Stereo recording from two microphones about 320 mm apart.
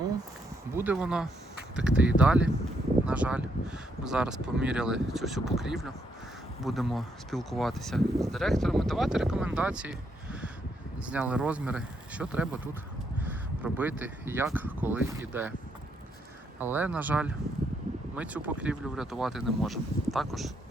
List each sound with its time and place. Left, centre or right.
0.8 s speech: centre
11.0 s speech: centre
16.6 s speech: centre